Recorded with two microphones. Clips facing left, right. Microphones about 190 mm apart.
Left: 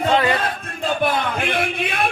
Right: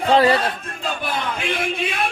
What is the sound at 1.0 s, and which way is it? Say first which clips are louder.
Music: left 6 dB; 55° left (ahead or behind).